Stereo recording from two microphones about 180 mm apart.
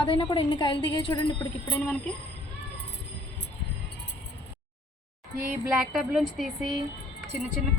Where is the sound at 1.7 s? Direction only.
10° left (ahead or behind).